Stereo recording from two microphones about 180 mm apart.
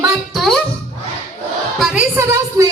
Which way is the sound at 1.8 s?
5° right (ahead or behind).